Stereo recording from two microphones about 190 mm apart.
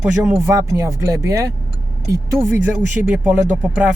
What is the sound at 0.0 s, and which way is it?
Speech, 10° right (ahead or behind).